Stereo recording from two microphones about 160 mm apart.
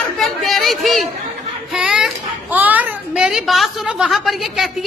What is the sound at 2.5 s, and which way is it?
A woman's voice, 10° right (ahead or behind).